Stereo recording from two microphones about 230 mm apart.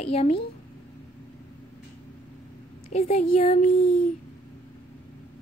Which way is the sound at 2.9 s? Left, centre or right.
Left.